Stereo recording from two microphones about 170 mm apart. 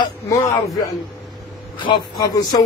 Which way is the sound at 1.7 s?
25° left (ahead or behind).